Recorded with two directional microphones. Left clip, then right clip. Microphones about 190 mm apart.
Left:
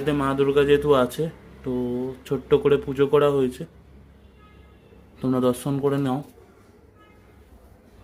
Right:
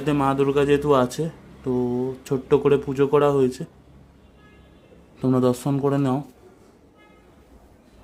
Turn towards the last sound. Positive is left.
turn(degrees=-15)  # may be behind; listen again after turning